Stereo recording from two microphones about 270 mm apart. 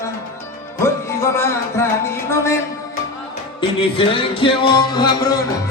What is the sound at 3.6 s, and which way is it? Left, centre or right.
Music, centre.